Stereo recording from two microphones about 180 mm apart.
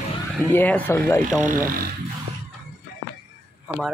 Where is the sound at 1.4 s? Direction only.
50° right (ahead or behind).